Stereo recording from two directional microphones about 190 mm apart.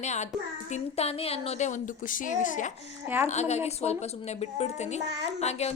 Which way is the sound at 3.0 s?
10° right (ahead or behind).